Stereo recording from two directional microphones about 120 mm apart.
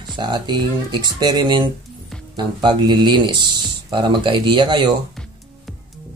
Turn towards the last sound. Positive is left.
turn(degrees=-40)  # may be behind; listen again after turning